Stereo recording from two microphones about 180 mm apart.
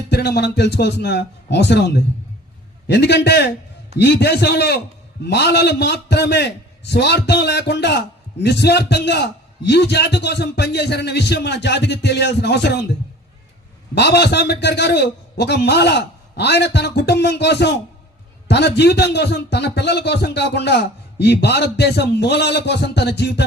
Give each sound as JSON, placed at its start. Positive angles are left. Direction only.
{"t": 0.1, "sound": "a man's voice", "side_deg": 65}
{"t": 13.9, "sound": "a man's voice", "side_deg": 65}